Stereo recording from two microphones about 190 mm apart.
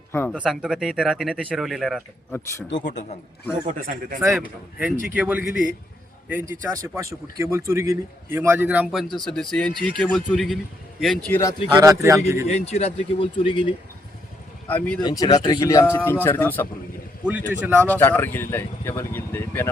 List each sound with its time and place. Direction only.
0.1 s speech: 10° left (ahead or behind)
0.3 s speech: centre (ahead or behind)
2.6 s speech: 70° left (ahead or behind)
3.7 s speech: 45° right (ahead or behind)
4.4 s a man's voice: 5° right (ahead or behind); by 11.5 s 10° left (ahead or behind)
11.7 s a man's voice: 15° right (ahead or behind)
12.5 s speech: 35° left (ahead or behind)
14.7 s speech: 5° left (ahead or behind)
15.0 s speech: 20° left (ahead or behind)
17.2 s a man's voice: 10° right (ahead or behind)
17.8 s speech: 10° left (ahead or behind)